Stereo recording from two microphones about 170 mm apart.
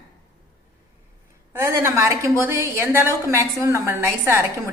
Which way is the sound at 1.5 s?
15° right (ahead or behind).